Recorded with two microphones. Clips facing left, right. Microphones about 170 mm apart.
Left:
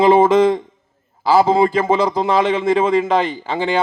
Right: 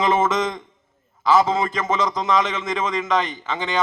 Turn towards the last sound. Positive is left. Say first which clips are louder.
# left 6 dB
turn(degrees=35)  # may be behind; listen again after turning